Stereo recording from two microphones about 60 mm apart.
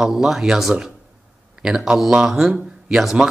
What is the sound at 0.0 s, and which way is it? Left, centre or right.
Speech, centre.